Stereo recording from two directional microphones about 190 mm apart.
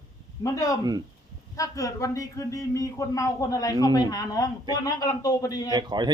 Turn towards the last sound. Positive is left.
turn(degrees=-25)  # may be behind; listen again after turning